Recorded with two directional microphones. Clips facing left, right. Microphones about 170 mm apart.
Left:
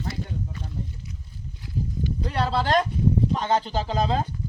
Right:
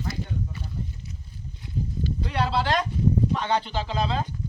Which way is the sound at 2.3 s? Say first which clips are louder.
Left 1 dB; 40° left (ahead or behind).